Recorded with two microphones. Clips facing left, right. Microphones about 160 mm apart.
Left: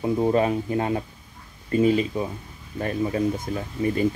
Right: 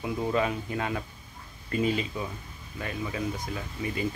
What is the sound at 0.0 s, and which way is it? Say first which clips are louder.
Speech: left 7 dB; 35° left (ahead or behind).